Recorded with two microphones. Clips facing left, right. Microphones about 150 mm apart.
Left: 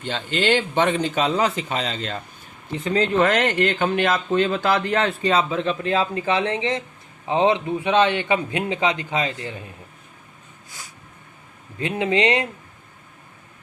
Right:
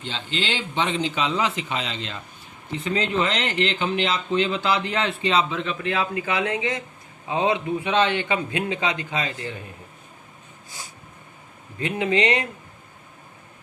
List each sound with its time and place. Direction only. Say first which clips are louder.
0.0 s a man's voice: left 6 dB; 55° left (ahead or behind); by 9.5 s 20° left (ahead or behind)
11.8 s a man's voice: left 1 dB; 30° left (ahead or behind)